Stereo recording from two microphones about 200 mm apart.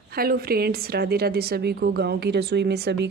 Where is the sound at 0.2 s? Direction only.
50° right (ahead or behind).